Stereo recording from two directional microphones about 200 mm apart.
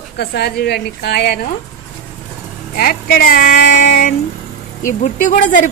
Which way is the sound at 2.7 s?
45° left (ahead or behind).